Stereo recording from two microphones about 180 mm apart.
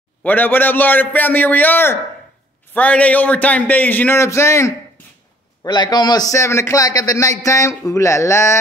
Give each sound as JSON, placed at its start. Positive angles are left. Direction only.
{"t": 0.2, "sound": "a man's voice", "side_deg": 10}